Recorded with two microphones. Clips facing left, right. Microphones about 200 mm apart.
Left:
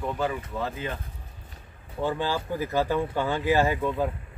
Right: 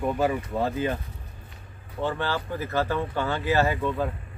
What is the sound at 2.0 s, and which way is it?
Speech, 15° left (ahead or behind).